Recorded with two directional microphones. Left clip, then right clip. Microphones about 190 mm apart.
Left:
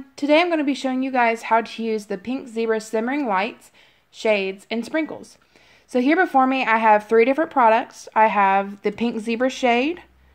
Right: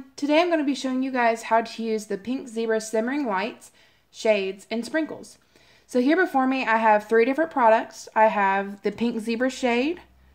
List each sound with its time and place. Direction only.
0.1 s a woman's voice: 35° left (ahead or behind)